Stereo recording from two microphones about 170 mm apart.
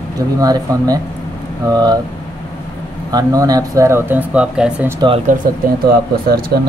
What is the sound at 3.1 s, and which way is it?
Speech, 25° right (ahead or behind).